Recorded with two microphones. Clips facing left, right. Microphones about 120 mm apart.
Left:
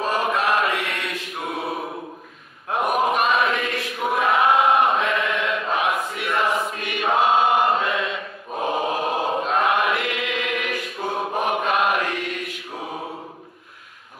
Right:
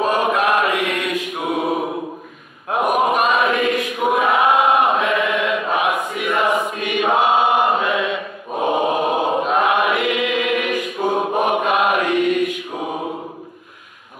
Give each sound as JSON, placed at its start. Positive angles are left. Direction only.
{"t": 0.0, "sound": "chant", "side_deg": -15}
{"t": 2.7, "sound": "choir", "side_deg": -5}
{"t": 11.2, "sound": "chant", "side_deg": -10}
{"t": 12.7, "sound": "mantra", "side_deg": -20}